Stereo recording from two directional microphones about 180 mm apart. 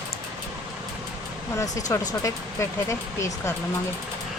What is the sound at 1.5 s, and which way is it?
Speech, 20° left (ahead or behind).